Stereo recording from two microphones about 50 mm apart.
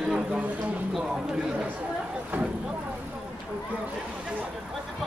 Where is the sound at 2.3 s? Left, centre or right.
Right.